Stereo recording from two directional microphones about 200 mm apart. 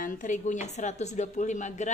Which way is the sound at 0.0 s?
40° left (ahead or behind).